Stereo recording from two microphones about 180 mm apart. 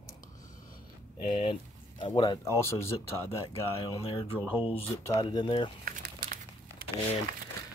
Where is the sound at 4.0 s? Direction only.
30° left (ahead or behind).